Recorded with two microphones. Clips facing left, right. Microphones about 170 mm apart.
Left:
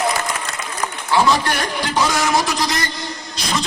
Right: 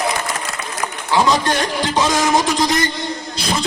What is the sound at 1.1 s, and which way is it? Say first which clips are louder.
Speech: right 1 dB; 20° right (ahead or behind).